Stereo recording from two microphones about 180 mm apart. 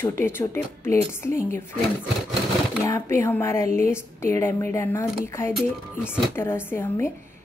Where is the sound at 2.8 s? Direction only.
15° left (ahead or behind).